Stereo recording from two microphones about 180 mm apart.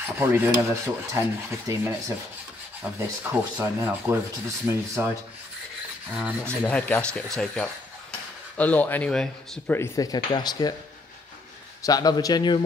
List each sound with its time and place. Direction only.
0.2 s speech: 15° right (ahead or behind)
6.1 s speech: 5° right (ahead or behind)
6.7 s speech: 5° left (ahead or behind); by 10.7 s 20° left (ahead or behind)
11.8 s a man's voice: 20° left (ahead or behind)